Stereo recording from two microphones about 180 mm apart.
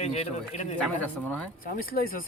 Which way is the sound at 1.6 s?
55° left (ahead or behind).